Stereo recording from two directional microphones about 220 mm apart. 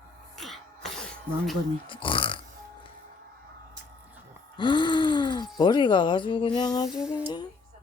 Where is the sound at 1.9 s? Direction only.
25° left (ahead or behind).